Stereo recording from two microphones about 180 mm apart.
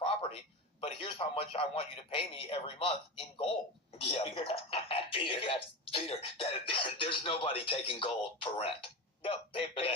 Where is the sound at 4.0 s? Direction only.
35° left (ahead or behind).